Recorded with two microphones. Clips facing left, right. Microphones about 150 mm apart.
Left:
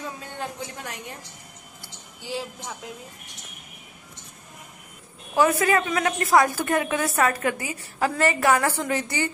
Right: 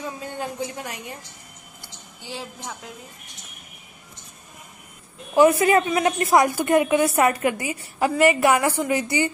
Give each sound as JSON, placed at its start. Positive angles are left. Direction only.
{"t": 0.4, "sound": "a woman's voice", "side_deg": -5}
{"t": 5.3, "sound": "a woman's voice", "side_deg": -20}